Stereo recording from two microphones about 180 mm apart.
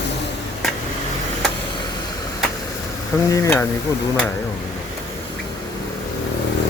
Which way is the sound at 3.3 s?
15° left (ahead or behind).